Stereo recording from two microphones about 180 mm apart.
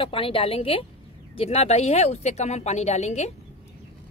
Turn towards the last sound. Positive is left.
turn(degrees=40)  # may be behind; listen again after turning